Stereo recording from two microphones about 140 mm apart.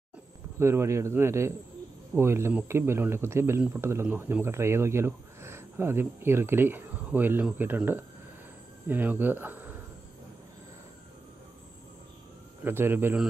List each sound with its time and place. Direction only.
0.6 s a man's voice: 20° right (ahead or behind)
12.6 s speech: 15° right (ahead or behind)